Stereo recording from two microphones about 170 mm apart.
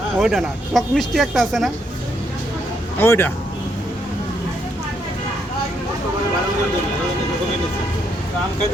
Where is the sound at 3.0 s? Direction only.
15° left (ahead or behind).